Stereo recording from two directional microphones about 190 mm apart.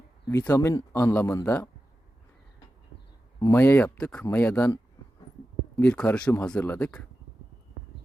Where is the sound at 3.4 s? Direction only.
10° left (ahead or behind).